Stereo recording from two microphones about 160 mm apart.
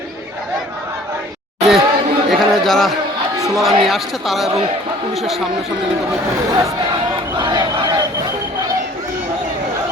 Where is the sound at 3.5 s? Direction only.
Centre (ahead or behind).